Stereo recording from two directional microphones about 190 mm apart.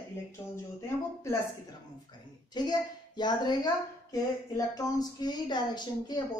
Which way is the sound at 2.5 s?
20° left (ahead or behind).